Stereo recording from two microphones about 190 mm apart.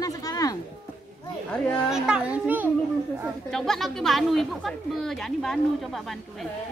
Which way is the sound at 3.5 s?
Centre (ahead or behind).